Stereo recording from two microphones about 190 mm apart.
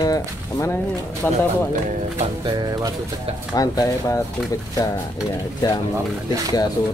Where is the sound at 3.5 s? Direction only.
20° left (ahead or behind).